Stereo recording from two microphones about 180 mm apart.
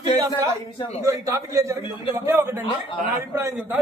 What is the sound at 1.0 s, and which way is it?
A man's voice, 15° right (ahead or behind).